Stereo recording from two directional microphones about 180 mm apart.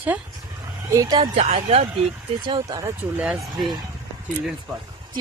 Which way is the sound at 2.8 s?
5° right (ahead or behind).